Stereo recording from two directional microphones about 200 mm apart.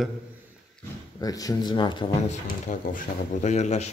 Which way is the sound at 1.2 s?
20° left (ahead or behind).